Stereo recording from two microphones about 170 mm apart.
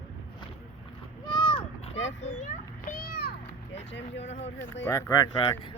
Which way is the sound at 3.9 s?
90° left.